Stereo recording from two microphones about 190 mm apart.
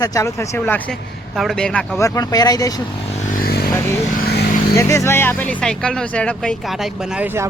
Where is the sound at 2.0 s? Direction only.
15° left (ahead or behind).